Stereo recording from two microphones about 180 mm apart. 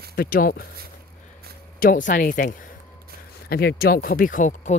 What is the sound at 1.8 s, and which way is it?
Speech, 50° left (ahead or behind).